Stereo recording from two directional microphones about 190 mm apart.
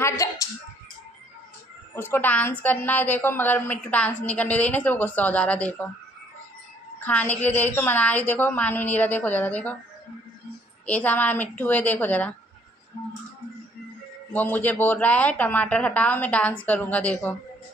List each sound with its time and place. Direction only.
0.0 s speech: 15° left (ahead or behind)
2.0 s speech: 10° left (ahead or behind)
7.0 s speech: 10° left (ahead or behind)
10.9 s speech: 10° left (ahead or behind)
14.3 s speech: 10° left (ahead or behind)